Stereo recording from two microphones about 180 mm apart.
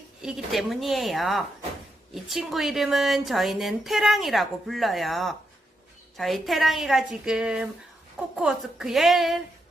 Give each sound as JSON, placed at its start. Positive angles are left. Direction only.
{"t": 0.2, "sound": "a woman's voice", "side_deg": 0}